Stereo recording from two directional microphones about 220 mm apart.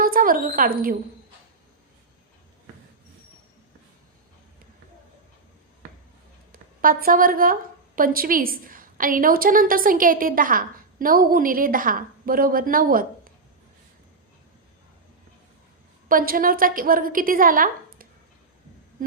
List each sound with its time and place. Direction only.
0.0 s speech: 40° right (ahead or behind)
6.5 s a woman's voice: 40° right (ahead or behind)
16.0 s a woman's voice: 40° right (ahead or behind)